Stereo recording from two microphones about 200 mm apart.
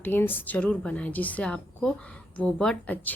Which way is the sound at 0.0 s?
10° left (ahead or behind).